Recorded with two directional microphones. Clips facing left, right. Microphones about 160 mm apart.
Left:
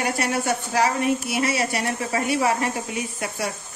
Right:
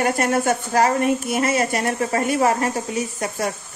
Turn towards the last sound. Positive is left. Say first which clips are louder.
# right 4 dB
turn(degrees=-40)  # may be behind; listen again after turning